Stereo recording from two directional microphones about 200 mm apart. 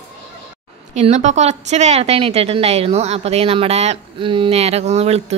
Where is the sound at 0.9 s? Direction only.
35° right (ahead or behind).